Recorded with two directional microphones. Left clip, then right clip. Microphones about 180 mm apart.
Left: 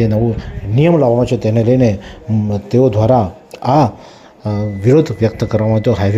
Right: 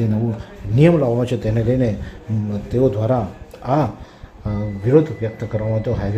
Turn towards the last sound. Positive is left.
turn(degrees=35)  # may be behind; listen again after turning